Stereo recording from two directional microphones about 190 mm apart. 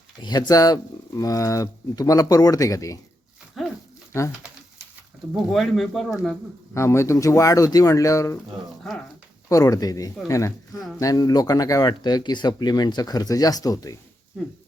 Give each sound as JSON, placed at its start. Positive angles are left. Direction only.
{"t": 0.2, "sound": "speech", "side_deg": 20}
{"t": 3.6, "sound": "a sound", "side_deg": 0}
{"t": 4.1, "sound": "speech", "side_deg": 15}
{"t": 5.3, "sound": "speech", "side_deg": 0}
{"t": 6.7, "sound": "speech", "side_deg": 15}
{"t": 8.8, "sound": "speech", "side_deg": 5}
{"t": 9.5, "sound": "speech", "side_deg": 15}